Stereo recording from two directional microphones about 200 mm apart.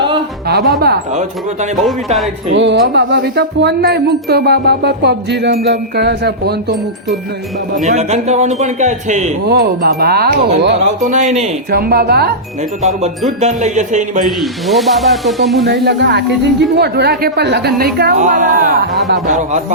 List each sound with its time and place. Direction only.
2.5 s music: 65° right (ahead or behind)
7.9 s a man's voice: 35° right (ahead or behind)
9.5 s a woman's voice: 55° right (ahead or behind)
11.0 s a man's voice: 40° right (ahead or behind)
11.7 s a woman's voice: 50° right (ahead or behind)
12.8 s a man's voice: 35° right (ahead or behind)
14.3 s speech: centre (ahead or behind)
15.6 s a woman's voice: 60° right (ahead or behind)
19.3 s a man's voice: 35° right (ahead or behind)